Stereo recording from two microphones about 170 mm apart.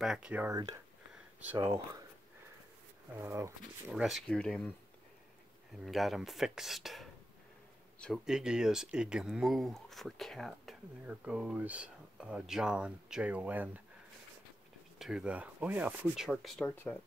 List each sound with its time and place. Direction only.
0.0 s speech: 5° right (ahead or behind)
3.2 s speech: 15° right (ahead or behind)
3.9 s speech: centre (ahead or behind)
5.9 s speech: centre (ahead or behind)
15.0 s speech: 5° right (ahead or behind)
16.6 s speech: 10° left (ahead or behind)